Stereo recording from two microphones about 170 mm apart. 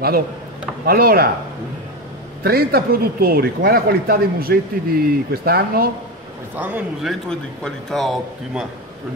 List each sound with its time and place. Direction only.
0.8 s speech: 65° right (ahead or behind)
2.4 s speech: 65° right (ahead or behind)
6.5 s a man's voice: 10° right (ahead or behind)